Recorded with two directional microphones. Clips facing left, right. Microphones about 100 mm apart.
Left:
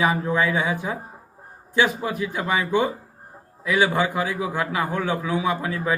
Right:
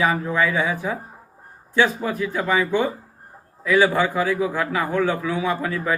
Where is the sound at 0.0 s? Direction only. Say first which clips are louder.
Right 1 dB; 20° left (ahead or behind).